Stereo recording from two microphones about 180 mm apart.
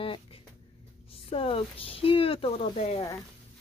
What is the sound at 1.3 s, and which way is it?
Speech, 30° left (ahead or behind).